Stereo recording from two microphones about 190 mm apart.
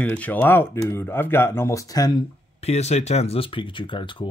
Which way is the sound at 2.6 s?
35° left (ahead or behind).